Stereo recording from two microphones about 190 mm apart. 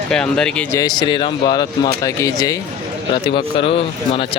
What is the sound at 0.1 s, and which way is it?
Speech, 5° left (ahead or behind).